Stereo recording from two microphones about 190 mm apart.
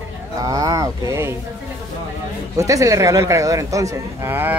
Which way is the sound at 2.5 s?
15° right (ahead or behind).